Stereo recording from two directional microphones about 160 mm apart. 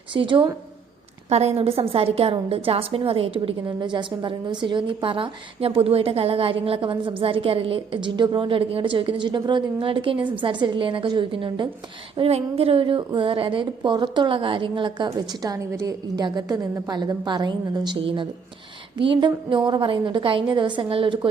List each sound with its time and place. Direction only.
0.1 s a woman's voice: 30° right (ahead or behind)